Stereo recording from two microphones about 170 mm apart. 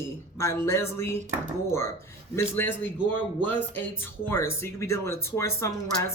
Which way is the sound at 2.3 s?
15° left (ahead or behind).